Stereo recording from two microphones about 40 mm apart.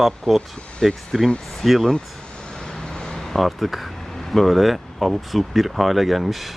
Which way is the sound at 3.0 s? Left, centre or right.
Centre.